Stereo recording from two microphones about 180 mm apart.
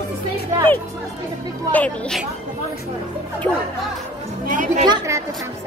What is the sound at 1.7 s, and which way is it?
Speech, 5° left (ahead or behind).